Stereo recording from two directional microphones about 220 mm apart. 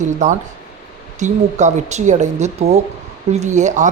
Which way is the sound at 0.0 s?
35° right (ahead or behind).